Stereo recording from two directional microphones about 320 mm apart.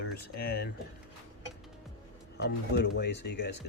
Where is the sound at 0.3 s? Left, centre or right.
Left.